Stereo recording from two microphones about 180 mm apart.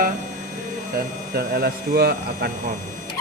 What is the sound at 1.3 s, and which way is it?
Speech, 60° right (ahead or behind).